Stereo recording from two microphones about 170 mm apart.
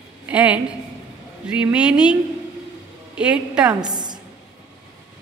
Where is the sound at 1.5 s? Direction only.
5° right (ahead or behind).